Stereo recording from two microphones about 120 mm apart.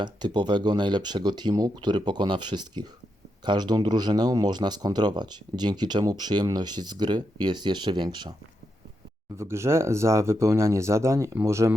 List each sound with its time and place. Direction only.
0.0 s speech: 40° right (ahead or behind)
9.4 s speech: 20° right (ahead or behind)